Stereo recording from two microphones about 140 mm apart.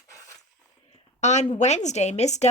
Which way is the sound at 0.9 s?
55° left (ahead or behind).